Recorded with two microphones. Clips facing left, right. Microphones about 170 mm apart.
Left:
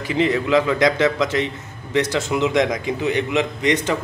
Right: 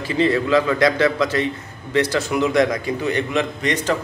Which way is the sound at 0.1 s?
15° left (ahead or behind).